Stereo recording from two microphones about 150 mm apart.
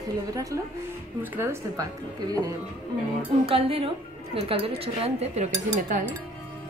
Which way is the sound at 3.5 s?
40° right (ahead or behind).